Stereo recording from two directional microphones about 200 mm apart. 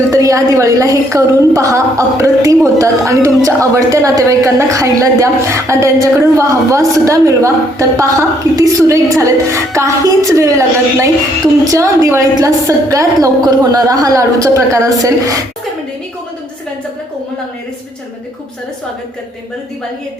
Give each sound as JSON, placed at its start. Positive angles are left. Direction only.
{"t": 0.1, "sound": "a woman's voice", "side_deg": -15}